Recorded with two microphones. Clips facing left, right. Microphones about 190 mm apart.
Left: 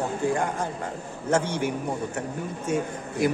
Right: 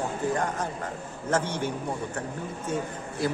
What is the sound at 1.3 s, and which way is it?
A man's voice, 10° left (ahead or behind).